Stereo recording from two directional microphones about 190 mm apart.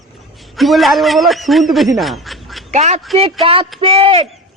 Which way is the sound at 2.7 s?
35° right (ahead or behind).